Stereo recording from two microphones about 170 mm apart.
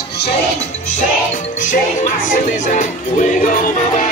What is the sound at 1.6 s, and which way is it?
Music, 50° left (ahead or behind).